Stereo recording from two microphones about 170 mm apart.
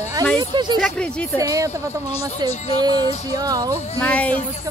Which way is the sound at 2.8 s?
25° right (ahead or behind).